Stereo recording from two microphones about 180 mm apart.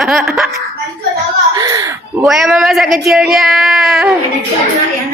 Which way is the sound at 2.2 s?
Centre (ahead or behind).